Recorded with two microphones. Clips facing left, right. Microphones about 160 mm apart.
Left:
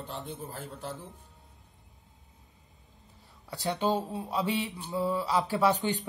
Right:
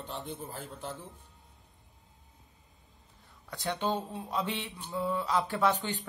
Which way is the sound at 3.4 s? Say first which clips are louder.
Left 3 dB; 10° left (ahead or behind).